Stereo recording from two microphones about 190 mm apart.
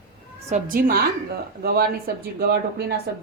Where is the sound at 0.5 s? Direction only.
50° right (ahead or behind).